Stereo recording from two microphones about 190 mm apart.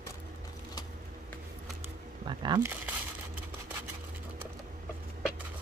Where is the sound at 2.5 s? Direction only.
10° right (ahead or behind).